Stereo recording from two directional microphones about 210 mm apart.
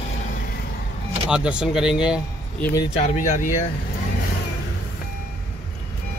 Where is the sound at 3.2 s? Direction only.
40° left (ahead or behind).